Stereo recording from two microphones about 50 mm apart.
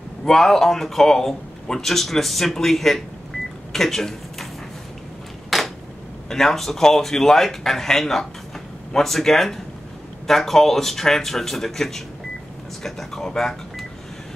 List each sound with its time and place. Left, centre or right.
0.2 s a man's voice: centre
5.5 s a sound: centre
6.2 s a man's voice: centre